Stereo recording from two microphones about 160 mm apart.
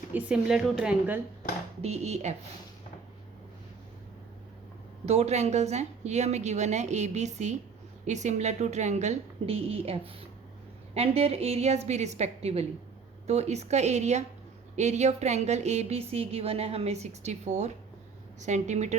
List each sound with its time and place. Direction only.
0.1 s a woman's voice: 10° right (ahead or behind)
1.8 s a woman's voice: 40° right (ahead or behind)
5.0 s a woman's voice: 40° right (ahead or behind)